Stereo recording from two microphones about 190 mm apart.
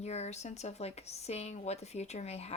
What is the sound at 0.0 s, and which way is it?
Speech, 35° left (ahead or behind).